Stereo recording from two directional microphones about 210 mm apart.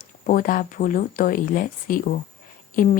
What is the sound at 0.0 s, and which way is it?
Speech, 40° left (ahead or behind).